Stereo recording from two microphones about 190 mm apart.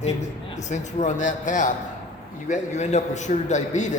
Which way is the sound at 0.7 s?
40° left (ahead or behind).